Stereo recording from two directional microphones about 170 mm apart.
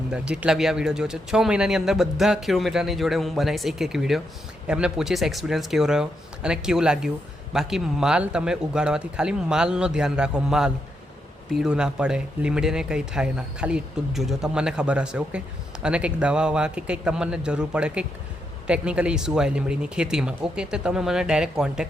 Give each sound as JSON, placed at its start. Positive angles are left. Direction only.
{"t": 0.1, "sound": "speech", "side_deg": -5}